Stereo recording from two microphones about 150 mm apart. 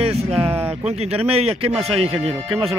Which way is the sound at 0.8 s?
40° right (ahead or behind).